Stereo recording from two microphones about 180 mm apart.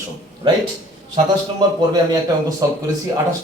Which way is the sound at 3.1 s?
15° right (ahead or behind).